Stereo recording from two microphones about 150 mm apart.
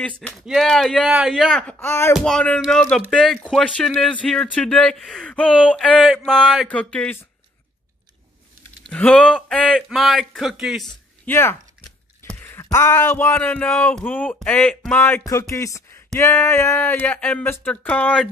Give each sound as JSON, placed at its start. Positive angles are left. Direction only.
{"t": 0.0, "sound": "speech", "side_deg": 5}
{"t": 1.7, "sound": "speech", "side_deg": 15}
{"t": 2.1, "sound": "speech", "side_deg": 5}
{"t": 3.6, "sound": "speech", "side_deg": 5}
{"t": 8.9, "sound": "speech", "side_deg": 5}
{"t": 11.2, "sound": "a sound", "side_deg": 15}
{"t": 12.6, "sound": "speech", "side_deg": 20}